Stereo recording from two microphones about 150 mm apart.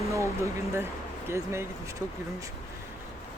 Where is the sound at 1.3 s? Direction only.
20° right (ahead or behind).